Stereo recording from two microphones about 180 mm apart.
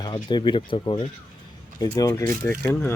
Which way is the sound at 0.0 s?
25° left (ahead or behind).